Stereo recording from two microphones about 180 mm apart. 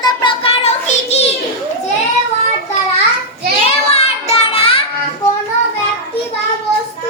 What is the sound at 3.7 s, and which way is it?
Child singing, 35° left (ahead or behind).